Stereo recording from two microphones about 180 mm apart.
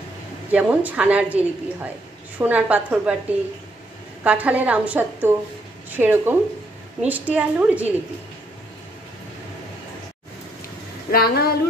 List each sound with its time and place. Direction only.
0.5 s a woman's voice: 10° right (ahead or behind)
4.2 s a woman's voice: 10° right (ahead or behind)
11.1 s speech: 55° left (ahead or behind)